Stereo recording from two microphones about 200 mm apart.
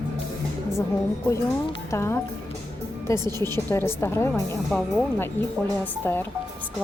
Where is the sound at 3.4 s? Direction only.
10° left (ahead or behind).